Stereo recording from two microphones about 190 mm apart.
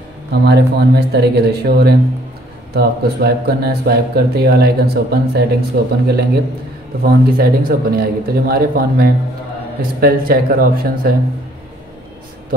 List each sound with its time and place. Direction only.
0.3 s a man's voice: 60° right (ahead or behind)